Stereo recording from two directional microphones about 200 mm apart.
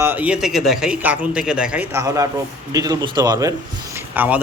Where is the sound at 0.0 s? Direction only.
10° right (ahead or behind).